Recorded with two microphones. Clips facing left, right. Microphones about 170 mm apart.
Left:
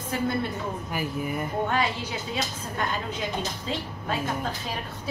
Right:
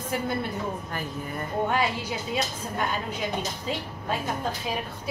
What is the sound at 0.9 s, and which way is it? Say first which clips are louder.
Speech: left 4 dB; 10° left (ahead or behind).